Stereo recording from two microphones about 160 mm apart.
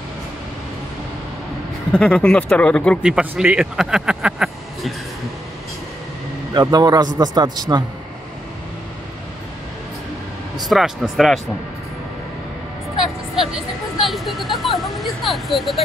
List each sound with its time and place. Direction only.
1.9 s speech: 5° left (ahead or behind)
3.0 s speech: 5° right (ahead or behind)
6.5 s a man's voice: 25° right (ahead or behind)
10.7 s speech: centre (ahead or behind)
13.0 s music: centre (ahead or behind)
14.0 s a sound: centre (ahead or behind)